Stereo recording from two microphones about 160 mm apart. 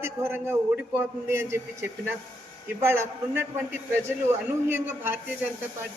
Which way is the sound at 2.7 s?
15° right (ahead or behind).